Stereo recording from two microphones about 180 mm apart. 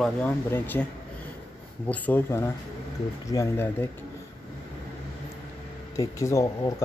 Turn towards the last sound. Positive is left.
turn(degrees=15)  # may be behind; listen again after turning